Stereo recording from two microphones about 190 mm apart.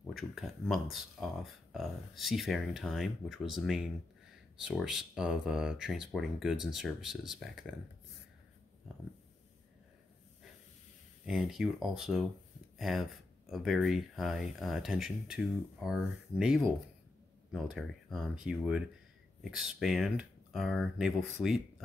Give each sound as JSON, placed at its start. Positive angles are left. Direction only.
{"t": 0.1, "sound": "speech", "side_deg": 0}
{"t": 11.2, "sound": "speech", "side_deg": 0}